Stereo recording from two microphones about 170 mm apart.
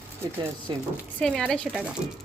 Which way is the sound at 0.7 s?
25° right (ahead or behind).